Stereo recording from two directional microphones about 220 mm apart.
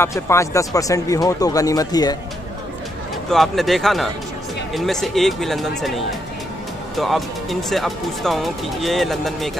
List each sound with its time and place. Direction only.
0.0 s speech: 15° left (ahead or behind)
3.3 s speech: centre (ahead or behind)
7.0 s speech: centre (ahead or behind)